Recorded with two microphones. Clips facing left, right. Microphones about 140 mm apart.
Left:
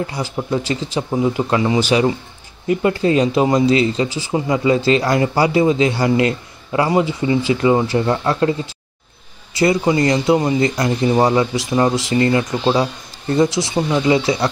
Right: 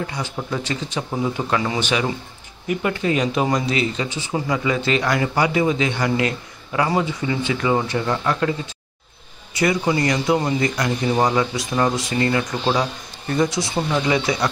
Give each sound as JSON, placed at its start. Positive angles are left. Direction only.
{"t": 0.0, "sound": "speech", "side_deg": 30}
{"t": 1.1, "sound": "a man's voice", "side_deg": 20}
{"t": 1.8, "sound": "a man's voice", "side_deg": 35}
{"t": 13.6, "sound": "a man's voice", "side_deg": 15}